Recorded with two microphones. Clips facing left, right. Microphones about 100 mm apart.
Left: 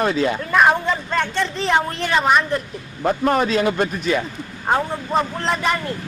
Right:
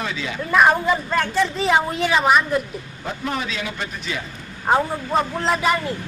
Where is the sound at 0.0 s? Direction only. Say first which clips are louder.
Left 9 dB; 45° left (ahead or behind).